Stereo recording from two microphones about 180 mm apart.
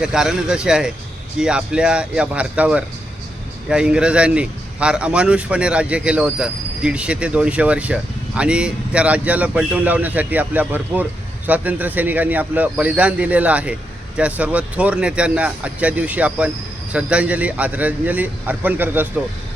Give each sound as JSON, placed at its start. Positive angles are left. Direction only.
{"t": 0.0, "sound": "a man's voice", "side_deg": -5}